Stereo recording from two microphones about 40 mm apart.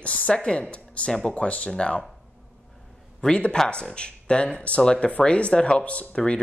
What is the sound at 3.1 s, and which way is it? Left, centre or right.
Speech, left.